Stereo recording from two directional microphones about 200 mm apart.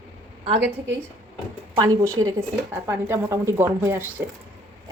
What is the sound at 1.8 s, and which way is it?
Speech, 15° right (ahead or behind).